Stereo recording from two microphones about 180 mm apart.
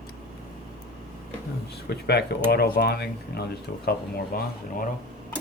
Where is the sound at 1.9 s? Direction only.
65° left (ahead or behind).